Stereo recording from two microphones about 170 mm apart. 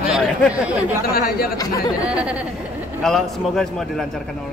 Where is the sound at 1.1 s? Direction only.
60° left (ahead or behind).